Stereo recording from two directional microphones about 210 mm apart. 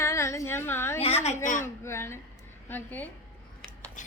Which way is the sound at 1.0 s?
30° left (ahead or behind).